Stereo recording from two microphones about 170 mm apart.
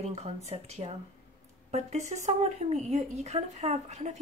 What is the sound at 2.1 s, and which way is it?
Speech, 45° right (ahead or behind).